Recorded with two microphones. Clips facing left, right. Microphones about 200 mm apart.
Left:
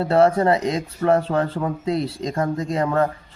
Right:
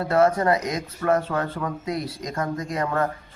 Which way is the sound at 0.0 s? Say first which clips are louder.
Left 3 dB; 30° left (ahead or behind).